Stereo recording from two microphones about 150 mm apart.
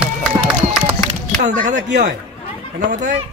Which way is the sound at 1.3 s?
60° right (ahead or behind).